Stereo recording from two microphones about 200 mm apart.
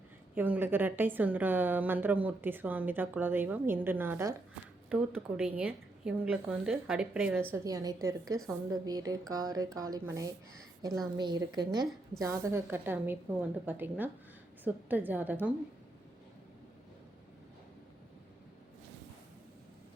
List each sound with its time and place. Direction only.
0.3 s a woman's voice: 10° right (ahead or behind)
7.6 s a woman's voice: 15° right (ahead or behind)